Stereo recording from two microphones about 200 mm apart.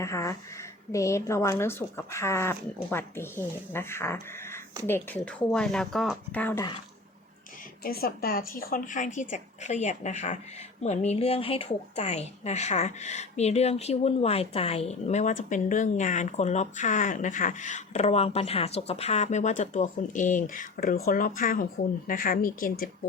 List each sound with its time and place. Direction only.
0.0 s speech: 15° left (ahead or behind)
7.9 s speech: 50° left (ahead or behind)